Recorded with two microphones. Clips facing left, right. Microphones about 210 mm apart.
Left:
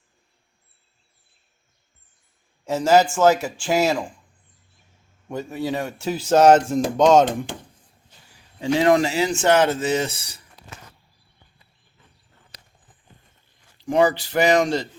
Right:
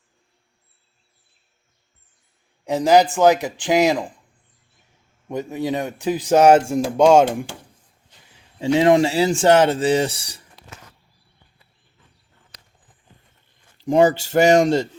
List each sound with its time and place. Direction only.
2.6 s a man's voice: 15° right (ahead or behind)
5.3 s a man's voice: 20° right (ahead or behind)
8.6 s speech: 25° right (ahead or behind)
14.2 s speech: 45° right (ahead or behind)